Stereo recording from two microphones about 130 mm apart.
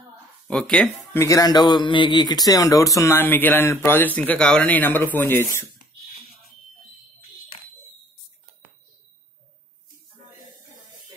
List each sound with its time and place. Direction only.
0.5 s speech: 5° left (ahead or behind)
1.1 s speech: 25° left (ahead or behind)